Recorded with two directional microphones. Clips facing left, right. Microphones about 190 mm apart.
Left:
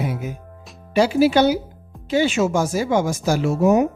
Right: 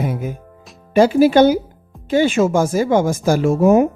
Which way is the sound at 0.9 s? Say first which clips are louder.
Right 4 dB; 50° right (ahead or behind).